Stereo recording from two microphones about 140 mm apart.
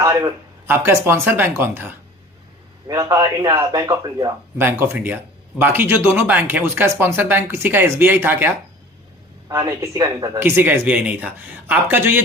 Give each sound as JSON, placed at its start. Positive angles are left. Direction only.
{"t": 0.0, "sound": "a sound", "side_deg": -25}
{"t": 0.7, "sound": "speech", "side_deg": -15}
{"t": 4.6, "sound": "speech", "side_deg": -15}
{"t": 9.6, "sound": "speech", "side_deg": -25}